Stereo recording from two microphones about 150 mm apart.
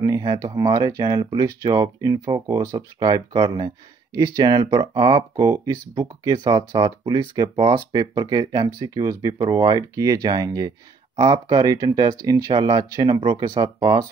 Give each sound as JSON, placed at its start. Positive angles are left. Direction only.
{"t": 0.0, "sound": "speech", "side_deg": -30}